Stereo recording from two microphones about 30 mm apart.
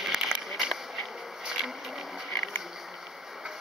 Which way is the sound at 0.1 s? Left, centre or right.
Centre.